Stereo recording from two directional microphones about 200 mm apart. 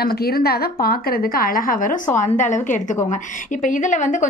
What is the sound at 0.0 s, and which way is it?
A woman's voice, 50° left (ahead or behind).